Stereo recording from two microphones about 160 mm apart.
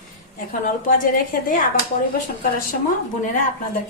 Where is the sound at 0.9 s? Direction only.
55° left (ahead or behind).